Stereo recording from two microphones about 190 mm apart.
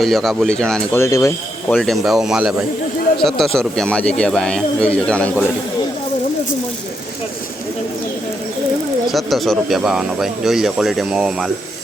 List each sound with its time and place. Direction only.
0.0 s speech: centre (ahead or behind)
1.0 s speech: 15° left (ahead or behind)
1.7 s speech: centre (ahead or behind)
9.1 s speech: centre (ahead or behind)